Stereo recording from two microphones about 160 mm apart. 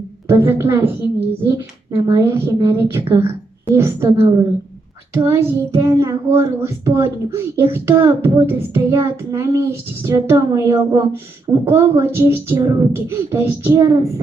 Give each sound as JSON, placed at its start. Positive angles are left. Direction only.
{"t": 0.3, "sound": "child singing", "side_deg": -15}